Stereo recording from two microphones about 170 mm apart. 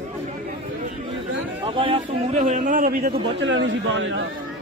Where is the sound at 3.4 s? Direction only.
90° right.